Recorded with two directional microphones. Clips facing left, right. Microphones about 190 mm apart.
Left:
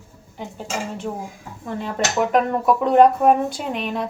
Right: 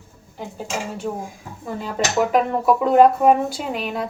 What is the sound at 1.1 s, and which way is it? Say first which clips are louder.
Speech: right 1 dB; centre (ahead or behind).